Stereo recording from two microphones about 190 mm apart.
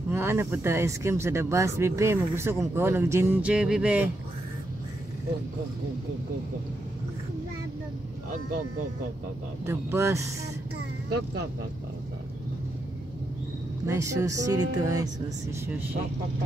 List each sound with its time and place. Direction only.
0.1 s speech: 15° right (ahead or behind)
9.7 s speech: 15° right (ahead or behind)
13.8 s speech: 15° right (ahead or behind)